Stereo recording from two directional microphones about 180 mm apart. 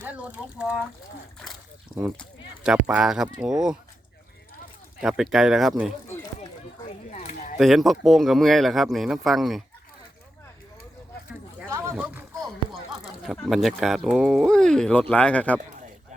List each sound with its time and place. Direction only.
0.0 s speech: 10° right (ahead or behind)
2.6 s speech: 5° right (ahead or behind)
4.9 s speech: centre (ahead or behind)
6.8 s a sound: 35° left (ahead or behind)
7.6 s speech: centre (ahead or behind)
11.7 s a sound: 10° right (ahead or behind)
13.2 s speech: centre (ahead or behind)